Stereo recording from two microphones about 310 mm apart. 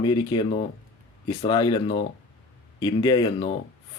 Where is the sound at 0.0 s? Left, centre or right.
Centre.